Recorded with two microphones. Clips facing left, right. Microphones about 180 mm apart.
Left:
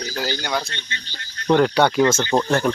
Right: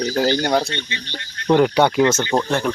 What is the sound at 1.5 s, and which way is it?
Speech, 15° right (ahead or behind).